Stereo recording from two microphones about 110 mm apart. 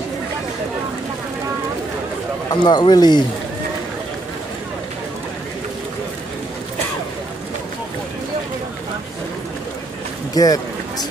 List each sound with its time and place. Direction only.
2.6 s speech: 40° left (ahead or behind)
10.3 s speech: 35° left (ahead or behind)